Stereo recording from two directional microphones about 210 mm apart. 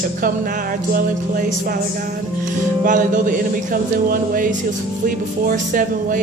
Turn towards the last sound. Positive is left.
turn(degrees=-40)  # may be behind; listen again after turning